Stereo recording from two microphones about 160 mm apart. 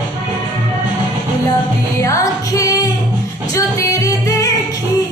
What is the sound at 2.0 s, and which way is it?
Music, 20° left (ahead or behind).